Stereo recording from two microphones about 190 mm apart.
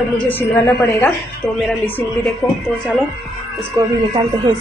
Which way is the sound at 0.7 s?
Centre (ahead or behind).